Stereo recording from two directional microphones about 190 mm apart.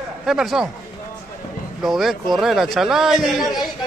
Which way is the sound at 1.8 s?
Centre (ahead or behind).